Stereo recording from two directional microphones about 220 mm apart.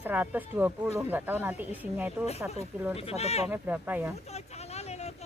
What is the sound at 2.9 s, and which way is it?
Speech, 25° left (ahead or behind).